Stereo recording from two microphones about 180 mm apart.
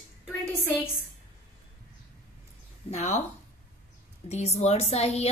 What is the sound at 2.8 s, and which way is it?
Speech, 35° left (ahead or behind).